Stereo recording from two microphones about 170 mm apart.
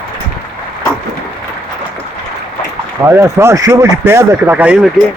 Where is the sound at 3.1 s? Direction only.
15° right (ahead or behind).